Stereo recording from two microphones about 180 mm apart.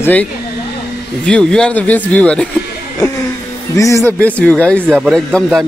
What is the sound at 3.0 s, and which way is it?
Music, 20° left (ahead or behind).